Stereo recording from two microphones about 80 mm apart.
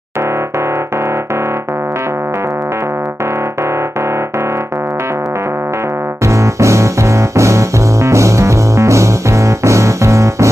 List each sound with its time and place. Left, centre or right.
6.2 s music: right